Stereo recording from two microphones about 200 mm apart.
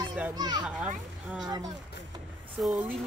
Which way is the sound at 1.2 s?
5° right (ahead or behind).